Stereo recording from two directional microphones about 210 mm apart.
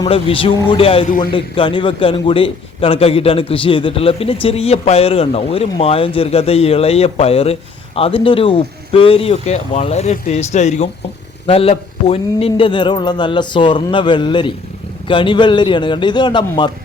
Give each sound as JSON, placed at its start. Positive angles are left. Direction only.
{"t": 0.0, "sound": "a man's voice", "side_deg": 25}